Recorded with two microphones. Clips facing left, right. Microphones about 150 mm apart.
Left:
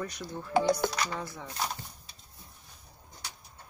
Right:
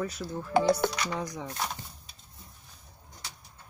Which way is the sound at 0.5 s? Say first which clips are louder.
Right 2 dB; 60° right (ahead or behind).